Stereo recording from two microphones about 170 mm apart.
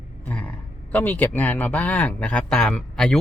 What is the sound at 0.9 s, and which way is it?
Speech, 10° left (ahead or behind).